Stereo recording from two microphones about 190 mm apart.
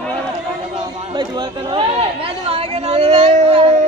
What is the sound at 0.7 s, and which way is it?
Speech, 25° right (ahead or behind).